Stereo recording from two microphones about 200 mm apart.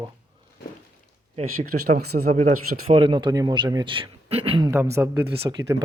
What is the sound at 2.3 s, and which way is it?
Speech, 35° right (ahead or behind).